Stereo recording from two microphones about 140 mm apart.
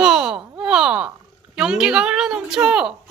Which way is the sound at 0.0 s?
5° right (ahead or behind).